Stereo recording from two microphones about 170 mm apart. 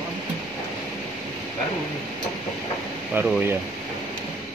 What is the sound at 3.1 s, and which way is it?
Speech, 10° right (ahead or behind).